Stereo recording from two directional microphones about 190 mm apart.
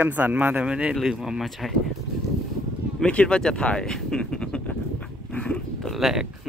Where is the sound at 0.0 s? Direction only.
10° right (ahead or behind).